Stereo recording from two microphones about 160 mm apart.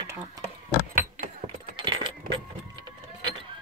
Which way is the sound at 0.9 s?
65° right (ahead or behind).